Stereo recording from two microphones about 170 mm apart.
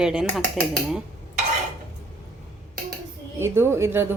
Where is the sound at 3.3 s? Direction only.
15° right (ahead or behind).